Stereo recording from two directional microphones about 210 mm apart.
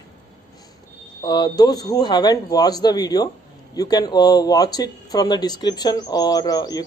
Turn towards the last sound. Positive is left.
turn(degrees=20)  # may be behind; listen again after turning